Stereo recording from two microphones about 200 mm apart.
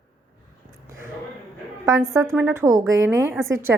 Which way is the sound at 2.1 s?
15° right (ahead or behind).